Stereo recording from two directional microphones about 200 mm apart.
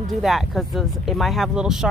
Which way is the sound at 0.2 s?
Centre (ahead or behind).